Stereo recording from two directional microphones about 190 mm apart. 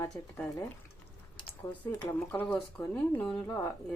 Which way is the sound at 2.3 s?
5° left (ahead or behind).